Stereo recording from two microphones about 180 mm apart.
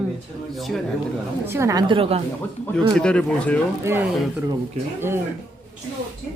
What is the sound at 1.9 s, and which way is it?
Speech, 30° right (ahead or behind).